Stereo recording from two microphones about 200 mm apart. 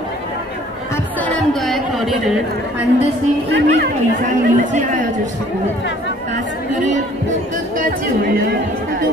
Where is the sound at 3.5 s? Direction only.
60° right (ahead or behind).